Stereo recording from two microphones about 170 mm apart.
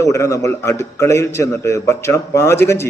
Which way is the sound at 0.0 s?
15° left (ahead or behind).